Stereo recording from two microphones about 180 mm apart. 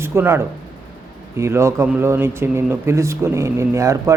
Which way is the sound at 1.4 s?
15° right (ahead or behind).